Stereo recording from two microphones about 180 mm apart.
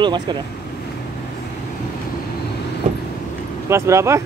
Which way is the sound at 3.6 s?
15° right (ahead or behind).